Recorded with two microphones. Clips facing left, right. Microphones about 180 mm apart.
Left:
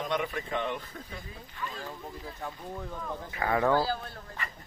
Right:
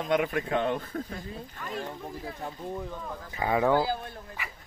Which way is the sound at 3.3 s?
15° right (ahead or behind).